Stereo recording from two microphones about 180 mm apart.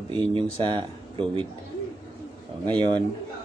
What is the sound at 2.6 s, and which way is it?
Speech, 25° right (ahead or behind).